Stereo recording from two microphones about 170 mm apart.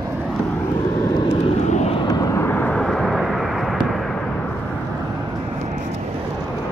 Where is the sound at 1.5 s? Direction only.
40° left (ahead or behind).